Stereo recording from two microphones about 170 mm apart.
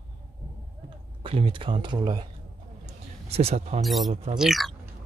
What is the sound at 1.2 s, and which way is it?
Speech, 30° right (ahead or behind).